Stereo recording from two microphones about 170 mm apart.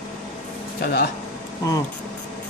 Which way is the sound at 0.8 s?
60° left (ahead or behind).